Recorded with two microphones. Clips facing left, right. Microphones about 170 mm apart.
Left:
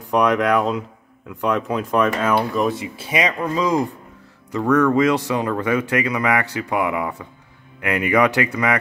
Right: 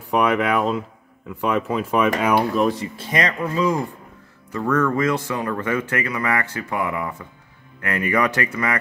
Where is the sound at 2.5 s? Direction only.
5° left (ahead or behind).